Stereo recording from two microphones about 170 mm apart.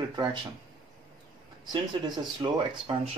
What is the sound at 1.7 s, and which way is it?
Speech, 25° right (ahead or behind).